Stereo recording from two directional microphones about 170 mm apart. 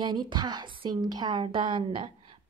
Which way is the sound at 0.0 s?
25° right (ahead or behind).